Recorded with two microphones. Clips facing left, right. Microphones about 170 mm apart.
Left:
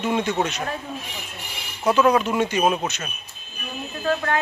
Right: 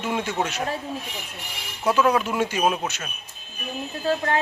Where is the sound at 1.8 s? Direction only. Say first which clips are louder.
Left 2 dB; 5° right (ahead or behind).